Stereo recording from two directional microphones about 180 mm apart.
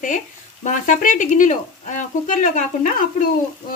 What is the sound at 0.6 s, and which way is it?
Speech, 45° left (ahead or behind).